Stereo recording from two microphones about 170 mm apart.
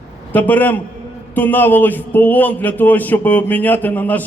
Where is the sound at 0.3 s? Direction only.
10° left (ahead or behind).